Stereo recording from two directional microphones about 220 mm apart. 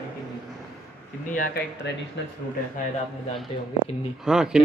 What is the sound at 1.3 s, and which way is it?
Speech, 40° left (ahead or behind).